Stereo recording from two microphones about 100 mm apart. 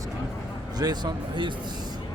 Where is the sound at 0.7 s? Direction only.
45° right (ahead or behind).